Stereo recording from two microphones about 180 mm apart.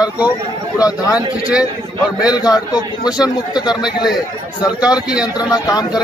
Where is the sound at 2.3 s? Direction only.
20° left (ahead or behind).